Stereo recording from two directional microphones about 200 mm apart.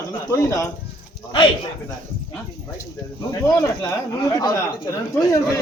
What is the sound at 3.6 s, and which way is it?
Speech, 15° left (ahead or behind).